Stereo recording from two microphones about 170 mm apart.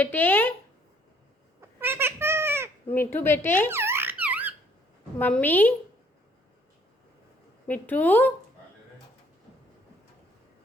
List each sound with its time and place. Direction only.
0.0 s speech: 10° left (ahead or behind)
1.8 s babbling: 15° right (ahead or behind)
2.9 s speech: 10° left (ahead or behind)
3.7 s squeak: 15° right (ahead or behind)
5.2 s speech: 10° left (ahead or behind)
7.7 s speech: 10° left (ahead or behind)